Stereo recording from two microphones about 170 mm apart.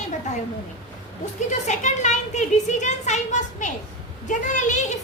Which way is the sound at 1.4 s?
45° left (ahead or behind).